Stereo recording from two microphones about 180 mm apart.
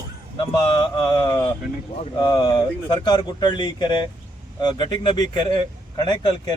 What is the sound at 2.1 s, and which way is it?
Speech, 25° left (ahead or behind).